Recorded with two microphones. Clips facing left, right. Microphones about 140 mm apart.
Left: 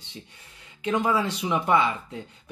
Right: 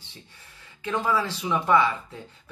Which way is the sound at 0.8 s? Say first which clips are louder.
Left 2 dB; 20° left (ahead or behind).